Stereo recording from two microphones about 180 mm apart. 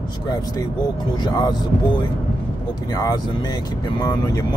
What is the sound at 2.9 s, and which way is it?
Speech, 20° left (ahead or behind).